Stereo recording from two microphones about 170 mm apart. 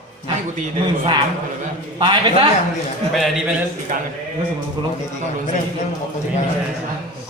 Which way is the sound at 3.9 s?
50° right (ahead or behind).